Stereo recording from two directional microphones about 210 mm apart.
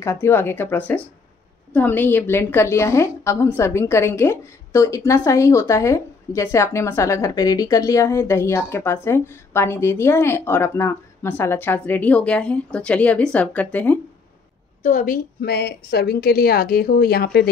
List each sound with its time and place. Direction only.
0.0 s a woman's voice: 10° left (ahead or behind)
14.8 s a woman's voice: 35° left (ahead or behind)